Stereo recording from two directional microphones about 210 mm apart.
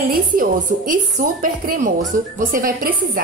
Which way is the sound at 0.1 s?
40° right (ahead or behind).